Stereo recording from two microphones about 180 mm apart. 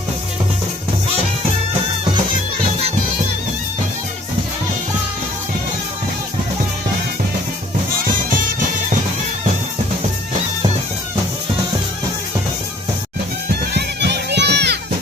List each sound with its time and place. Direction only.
13.7 s music: 70° right (ahead or behind)